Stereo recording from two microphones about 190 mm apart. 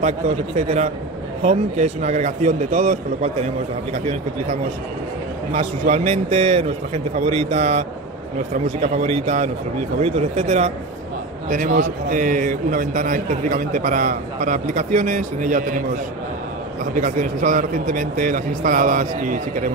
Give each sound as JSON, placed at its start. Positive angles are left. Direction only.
{"t": 0.6, "sound": "a man's voice", "side_deg": -35}
{"t": 5.5, "sound": "a man's voice", "side_deg": -35}
{"t": 8.8, "sound": "a man's voice", "side_deg": -35}
{"t": 16.9, "sound": "a man's voice", "side_deg": -45}